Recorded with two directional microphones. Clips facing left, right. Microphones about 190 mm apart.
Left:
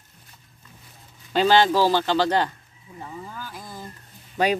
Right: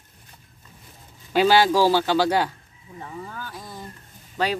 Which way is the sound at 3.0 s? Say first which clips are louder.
Right 1 dB; 10° left (ahead or behind).